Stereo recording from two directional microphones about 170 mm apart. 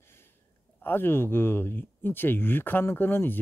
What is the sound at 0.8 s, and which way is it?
Speech, 10° left (ahead or behind).